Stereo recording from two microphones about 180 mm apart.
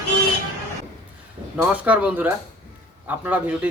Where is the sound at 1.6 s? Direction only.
10° right (ahead or behind).